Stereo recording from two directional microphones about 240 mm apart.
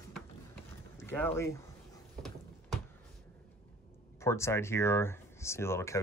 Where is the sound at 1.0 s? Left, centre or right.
Centre.